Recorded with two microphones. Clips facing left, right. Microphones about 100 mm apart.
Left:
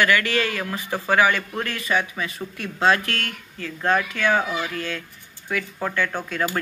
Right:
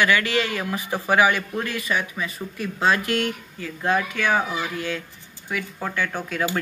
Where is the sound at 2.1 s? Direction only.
5° right (ahead or behind).